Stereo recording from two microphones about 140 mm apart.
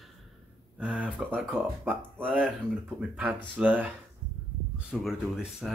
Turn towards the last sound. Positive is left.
turn(degrees=0)  # may be behind; listen again after turning